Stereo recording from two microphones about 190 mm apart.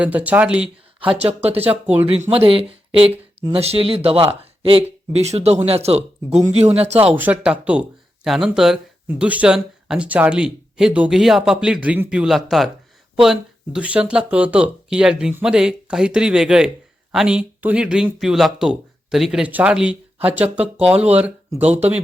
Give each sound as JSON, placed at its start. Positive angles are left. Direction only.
{"t": 0.0, "sound": "speech", "side_deg": -10}
{"t": 0.9, "sound": "speech", "side_deg": -30}
{"t": 7.1, "sound": "speech", "side_deg": -10}